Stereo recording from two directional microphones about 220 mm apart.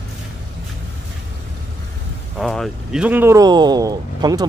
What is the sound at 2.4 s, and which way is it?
Speech, centre (ahead or behind).